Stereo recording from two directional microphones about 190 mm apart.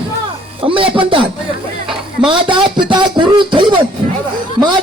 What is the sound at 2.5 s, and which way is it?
Speech, 25° right (ahead or behind).